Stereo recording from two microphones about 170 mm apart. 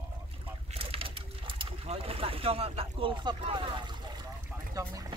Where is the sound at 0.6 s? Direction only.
35° right (ahead or behind).